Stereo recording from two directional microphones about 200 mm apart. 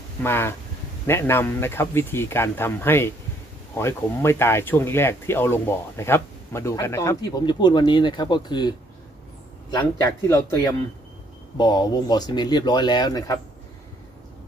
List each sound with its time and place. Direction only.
0.2 s speech: 10° left (ahead or behind)